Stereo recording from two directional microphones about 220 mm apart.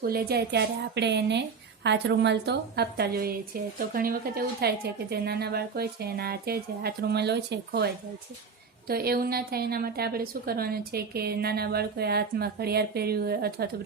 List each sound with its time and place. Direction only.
0.0 s a woman's voice: 45° right (ahead or behind)
8.9 s a woman's voice: 45° right (ahead or behind)